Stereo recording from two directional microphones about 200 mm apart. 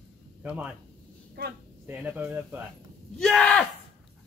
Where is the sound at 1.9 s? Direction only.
10° right (ahead or behind).